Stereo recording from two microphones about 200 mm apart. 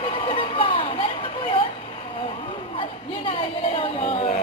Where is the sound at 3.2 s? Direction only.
25° left (ahead or behind).